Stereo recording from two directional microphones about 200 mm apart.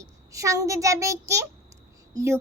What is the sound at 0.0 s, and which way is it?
A child's voice, 15° right (ahead or behind).